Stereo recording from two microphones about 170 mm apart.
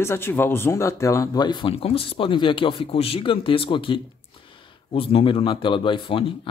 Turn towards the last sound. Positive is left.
turn(degrees=30)  # may be behind; listen again after turning